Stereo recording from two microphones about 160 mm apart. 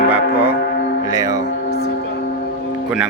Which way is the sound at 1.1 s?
20° right (ahead or behind).